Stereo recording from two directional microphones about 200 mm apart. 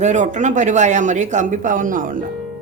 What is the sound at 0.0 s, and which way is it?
Speech, 35° right (ahead or behind).